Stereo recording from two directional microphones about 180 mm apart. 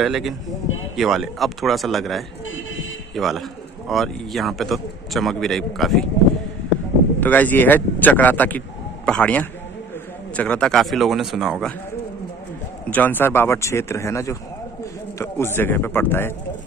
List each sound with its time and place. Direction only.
0.0 s a man's voice: centre (ahead or behind)
2.5 s a sound: 90° left
3.2 s a man's voice: centre (ahead or behind)
7.2 s a man's voice: 10° left (ahead or behind)
12.9 s speech: 10° left (ahead or behind)